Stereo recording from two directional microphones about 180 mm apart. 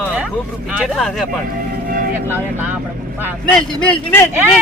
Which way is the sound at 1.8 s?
55° right (ahead or behind).